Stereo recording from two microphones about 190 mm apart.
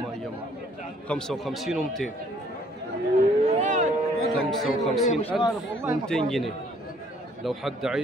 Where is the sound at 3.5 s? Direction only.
40° right (ahead or behind).